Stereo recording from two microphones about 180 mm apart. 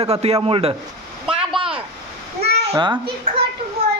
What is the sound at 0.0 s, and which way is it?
Speech, 35° right (ahead or behind).